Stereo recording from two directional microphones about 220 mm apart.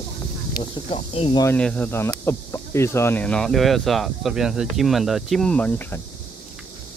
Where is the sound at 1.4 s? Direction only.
5° left (ahead or behind).